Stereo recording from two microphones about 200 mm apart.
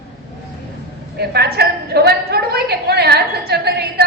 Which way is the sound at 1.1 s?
55° right (ahead or behind).